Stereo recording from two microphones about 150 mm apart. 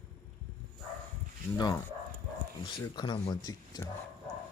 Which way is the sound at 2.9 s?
30° left (ahead or behind).